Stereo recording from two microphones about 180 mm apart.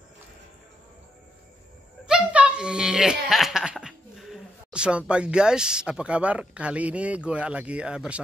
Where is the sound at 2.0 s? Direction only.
5° right (ahead or behind).